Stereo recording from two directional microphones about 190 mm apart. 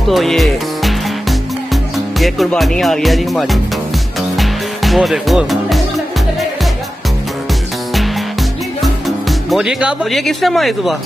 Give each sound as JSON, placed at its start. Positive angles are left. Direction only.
{"t": 0.1, "sound": "music", "side_deg": 0}
{"t": 8.8, "sound": "speech", "side_deg": 0}